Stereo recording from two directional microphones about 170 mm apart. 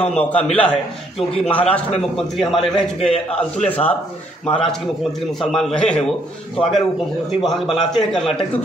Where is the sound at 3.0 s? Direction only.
40° left (ahead or behind).